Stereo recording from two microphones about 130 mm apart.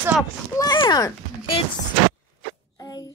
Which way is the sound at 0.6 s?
30° left (ahead or behind).